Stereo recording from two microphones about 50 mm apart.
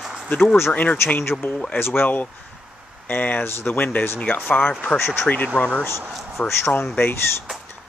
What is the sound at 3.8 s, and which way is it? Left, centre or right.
Speech, left.